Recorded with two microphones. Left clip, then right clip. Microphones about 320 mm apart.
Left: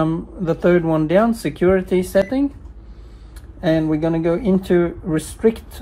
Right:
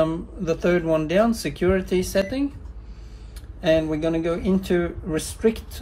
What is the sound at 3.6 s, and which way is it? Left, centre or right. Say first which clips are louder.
Speech: left 2 dB; centre.